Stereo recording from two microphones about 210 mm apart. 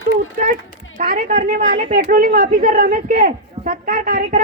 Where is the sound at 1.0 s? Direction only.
40° right (ahead or behind).